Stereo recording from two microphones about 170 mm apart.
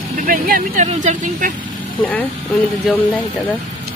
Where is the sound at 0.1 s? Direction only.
55° right (ahead or behind).